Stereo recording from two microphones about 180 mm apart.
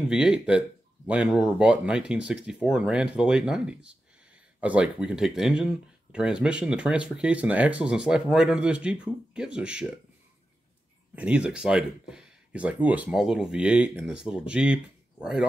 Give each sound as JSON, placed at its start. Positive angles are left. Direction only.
{"t": 0.1, "sound": "speech", "side_deg": -5}
{"t": 11.1, "sound": "speech", "side_deg": -5}